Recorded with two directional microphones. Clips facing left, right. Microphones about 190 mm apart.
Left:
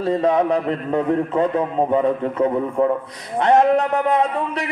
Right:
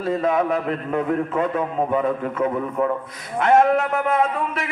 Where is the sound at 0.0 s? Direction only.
35° left (ahead or behind).